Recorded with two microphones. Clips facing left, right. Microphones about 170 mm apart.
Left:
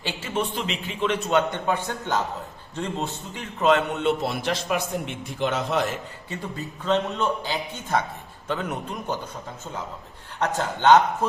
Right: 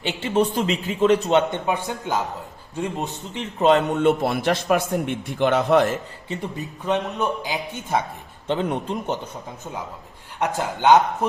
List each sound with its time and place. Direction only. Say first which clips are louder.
0.0 s a man's voice: right 5 dB; 20° right (ahead or behind)
0.3 s a man's voice: right 7 dB; 40° right (ahead or behind)
1.4 s a man's voice: right 2 dB; 20° right (ahead or behind)
3.6 s a man's voice: right 3 dB; 35° right (ahead or behind)
3.9 s a man's voice: right 5 dB; 50° right (ahead or behind)
6.2 s a man's voice: right 2 dB; 20° right (ahead or behind)
8.4 s a man's voice: right 5 dB; 30° right (ahead or behind)
10.4 s a man's voice: right 1 dB; 10° right (ahead or behind)